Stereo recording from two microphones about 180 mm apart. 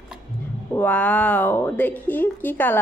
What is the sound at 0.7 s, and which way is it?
Speech, 10° left (ahead or behind).